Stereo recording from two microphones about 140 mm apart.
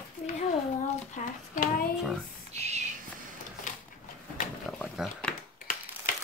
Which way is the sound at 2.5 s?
50° right (ahead or behind).